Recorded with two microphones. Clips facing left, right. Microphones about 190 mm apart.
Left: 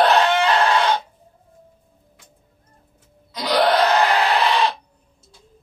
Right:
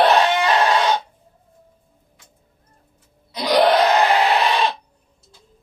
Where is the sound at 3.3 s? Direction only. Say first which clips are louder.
Right 2 dB; 20° right (ahead or behind).